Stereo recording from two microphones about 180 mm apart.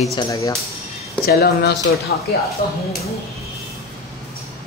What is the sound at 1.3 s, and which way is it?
Mantra, 60° left (ahead or behind).